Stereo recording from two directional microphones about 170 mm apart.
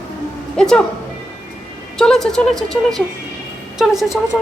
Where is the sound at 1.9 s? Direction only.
5° left (ahead or behind).